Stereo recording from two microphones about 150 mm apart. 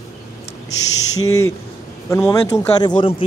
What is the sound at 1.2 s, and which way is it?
Speech, 20° left (ahead or behind).